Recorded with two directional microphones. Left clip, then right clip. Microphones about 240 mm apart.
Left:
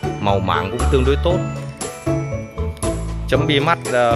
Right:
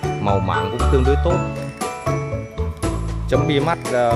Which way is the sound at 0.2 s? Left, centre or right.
Centre.